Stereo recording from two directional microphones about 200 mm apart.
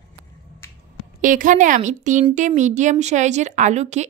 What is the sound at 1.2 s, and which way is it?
Speech, 40° right (ahead or behind).